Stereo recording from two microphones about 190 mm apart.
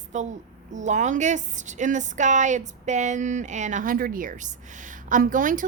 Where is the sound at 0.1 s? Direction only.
40° right (ahead or behind).